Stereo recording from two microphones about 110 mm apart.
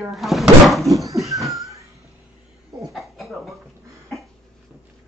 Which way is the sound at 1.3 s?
Centre (ahead or behind).